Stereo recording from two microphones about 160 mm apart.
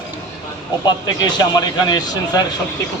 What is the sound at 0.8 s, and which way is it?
A man's voice, 25° left (ahead or behind).